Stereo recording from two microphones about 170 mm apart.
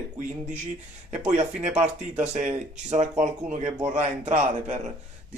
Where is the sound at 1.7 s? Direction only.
5° right (ahead or behind).